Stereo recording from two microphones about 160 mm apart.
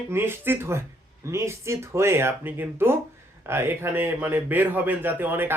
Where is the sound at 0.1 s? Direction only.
15° right (ahead or behind).